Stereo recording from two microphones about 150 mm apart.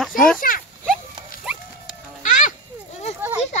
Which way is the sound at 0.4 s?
70° left (ahead or behind).